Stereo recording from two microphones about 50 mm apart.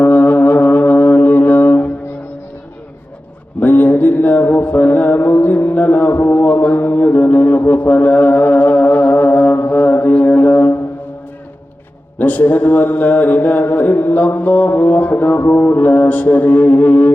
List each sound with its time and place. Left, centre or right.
0.0 s music: left
3.6 s mantra: left
12.2 s mantra: left